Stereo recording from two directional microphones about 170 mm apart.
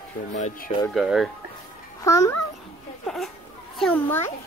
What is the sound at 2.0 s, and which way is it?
Speech, 20° left (ahead or behind).